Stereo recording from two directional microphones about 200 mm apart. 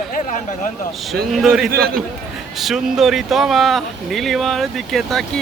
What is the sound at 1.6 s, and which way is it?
Speech, 50° right (ahead or behind).